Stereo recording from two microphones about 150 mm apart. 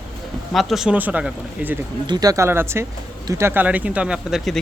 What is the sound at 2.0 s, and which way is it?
Speech, 25° right (ahead or behind).